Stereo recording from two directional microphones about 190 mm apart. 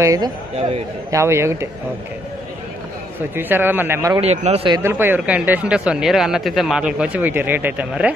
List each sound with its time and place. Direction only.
0.0 s speech: 15° right (ahead or behind)
0.6 s a man's voice: 30° right (ahead or behind)
1.1 s speech: 15° right (ahead or behind)
3.3 s speech: 10° right (ahead or behind)
4.2 s a man's voice: 35° right (ahead or behind)
4.6 s speech: 15° right (ahead or behind)